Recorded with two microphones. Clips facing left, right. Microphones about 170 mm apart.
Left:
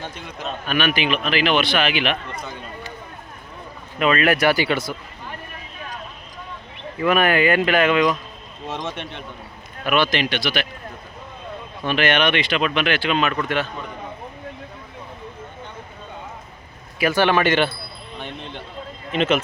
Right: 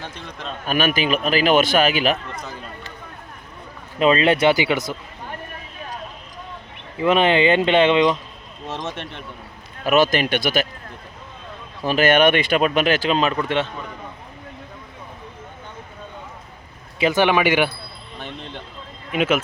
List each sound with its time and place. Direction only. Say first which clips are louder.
0.0 s speech: left 2 dB; 5° left (ahead or behind)
0.7 s a man's voice: right 2 dB; 40° right (ahead or behind)
2.3 s speech: left 1 dB; centre (ahead or behind)
3.9 s speech: right 2 dB; 30° right (ahead or behind)
7.0 s speech: right 2 dB; 25° right (ahead or behind)
8.6 s speech: even; centre (ahead or behind)
9.8 s speech: right 3 dB; 40° right (ahead or behind)
11.9 s a man's voice: right 4 dB; 45° right (ahead or behind)
17.0 s speech: right 1 dB; 20° right (ahead or behind)
18.2 s speech: even; centre (ahead or behind)